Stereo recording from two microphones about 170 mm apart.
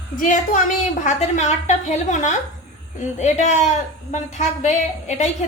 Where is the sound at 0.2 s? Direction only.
50° left (ahead or behind).